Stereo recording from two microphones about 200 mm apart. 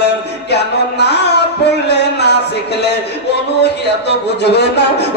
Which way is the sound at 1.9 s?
55° left (ahead or behind).